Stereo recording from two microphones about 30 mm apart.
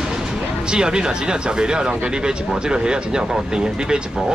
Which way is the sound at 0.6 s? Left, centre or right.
Right.